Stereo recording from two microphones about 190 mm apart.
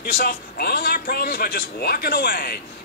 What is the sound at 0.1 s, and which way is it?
A man's voice, 50° left (ahead or behind).